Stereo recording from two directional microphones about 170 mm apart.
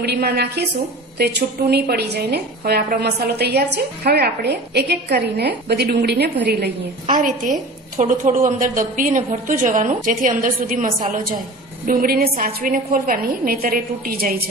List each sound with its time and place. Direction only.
0.0 s a woman's voice: 70° right (ahead or behind)
7.1 s a woman's voice: 50° right (ahead or behind)